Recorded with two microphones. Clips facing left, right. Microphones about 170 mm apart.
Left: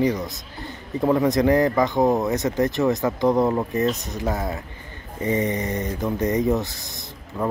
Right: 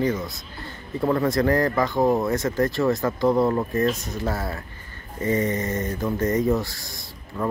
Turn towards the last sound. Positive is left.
turn(degrees=20)  # may be behind; listen again after turning